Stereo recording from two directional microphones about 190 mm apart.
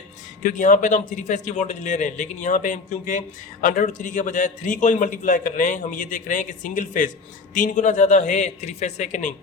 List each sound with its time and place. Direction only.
0.4 s a man's voice: 45° left (ahead or behind)